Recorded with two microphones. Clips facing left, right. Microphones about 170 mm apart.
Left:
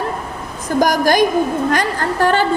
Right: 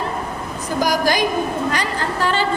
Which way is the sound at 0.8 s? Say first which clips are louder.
Left 5 dB; 50° left (ahead or behind).